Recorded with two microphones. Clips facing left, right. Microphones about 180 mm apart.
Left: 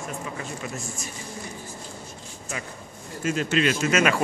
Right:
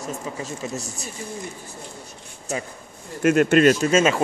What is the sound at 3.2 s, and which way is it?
Speech, 60° right (ahead or behind).